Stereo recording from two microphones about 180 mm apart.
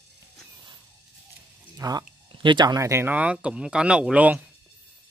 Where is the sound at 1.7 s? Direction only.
20° right (ahead or behind).